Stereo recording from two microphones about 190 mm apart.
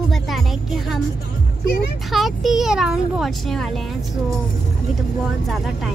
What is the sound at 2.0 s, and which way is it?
Speech, centre (ahead or behind).